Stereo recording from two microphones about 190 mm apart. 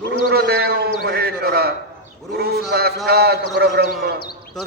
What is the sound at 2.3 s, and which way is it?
Speech, 55° right (ahead or behind).